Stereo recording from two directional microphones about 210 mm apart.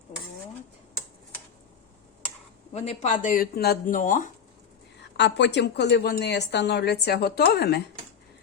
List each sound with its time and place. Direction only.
2.7 s speech: 30° left (ahead or behind)
4.9 s a woman's voice: 55° left (ahead or behind)